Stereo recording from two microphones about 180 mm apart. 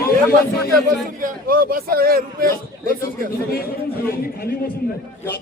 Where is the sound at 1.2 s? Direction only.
55° right (ahead or behind).